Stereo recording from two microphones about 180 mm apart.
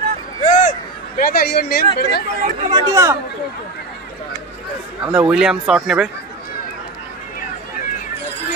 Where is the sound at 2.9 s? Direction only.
15° right (ahead or behind).